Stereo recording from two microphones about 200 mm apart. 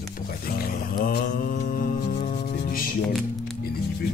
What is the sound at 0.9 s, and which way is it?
Mantra, 45° left (ahead or behind).